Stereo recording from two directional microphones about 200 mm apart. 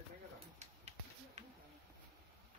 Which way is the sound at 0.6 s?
35° right (ahead or behind).